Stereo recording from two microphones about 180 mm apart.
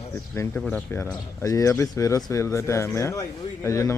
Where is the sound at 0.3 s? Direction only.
10° left (ahead or behind).